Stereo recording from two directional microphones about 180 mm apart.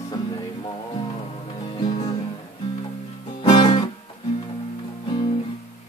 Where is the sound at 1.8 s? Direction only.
20° left (ahead or behind).